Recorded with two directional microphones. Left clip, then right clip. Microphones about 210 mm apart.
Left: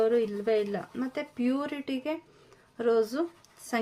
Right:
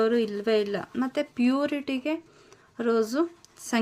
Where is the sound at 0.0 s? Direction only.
30° right (ahead or behind).